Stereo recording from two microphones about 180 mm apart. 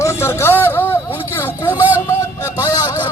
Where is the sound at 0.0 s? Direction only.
15° left (ahead or behind).